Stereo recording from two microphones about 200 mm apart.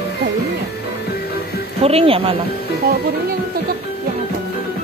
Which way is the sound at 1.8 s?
30° right (ahead or behind).